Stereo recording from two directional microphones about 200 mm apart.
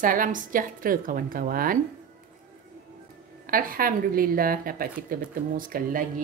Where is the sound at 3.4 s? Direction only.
45° right (ahead or behind).